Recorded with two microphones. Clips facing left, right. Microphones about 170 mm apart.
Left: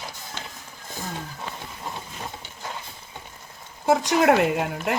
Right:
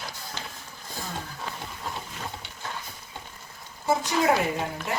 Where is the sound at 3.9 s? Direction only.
70° left (ahead or behind).